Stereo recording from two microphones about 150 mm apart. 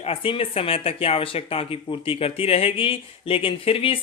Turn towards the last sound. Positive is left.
turn(degrees=40)  # may be behind; listen again after turning